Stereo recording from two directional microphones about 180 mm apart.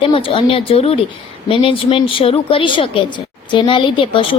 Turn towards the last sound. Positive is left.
turn(degrees=30)  # may be behind; listen again after turning